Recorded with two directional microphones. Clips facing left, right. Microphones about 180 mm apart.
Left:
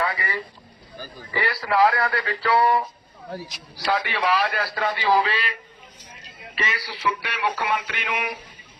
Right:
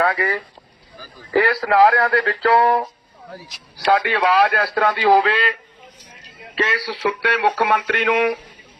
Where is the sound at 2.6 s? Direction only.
55° right (ahead or behind).